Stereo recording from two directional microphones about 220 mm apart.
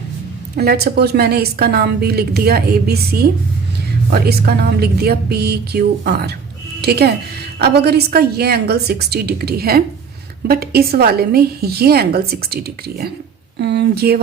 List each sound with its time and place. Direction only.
0.5 s a woman's voice: 45° right (ahead or behind)